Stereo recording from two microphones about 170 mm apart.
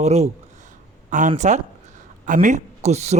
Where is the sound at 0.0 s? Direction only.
40° right (ahead or behind).